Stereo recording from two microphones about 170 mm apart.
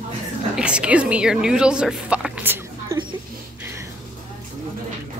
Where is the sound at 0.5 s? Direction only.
5° right (ahead or behind).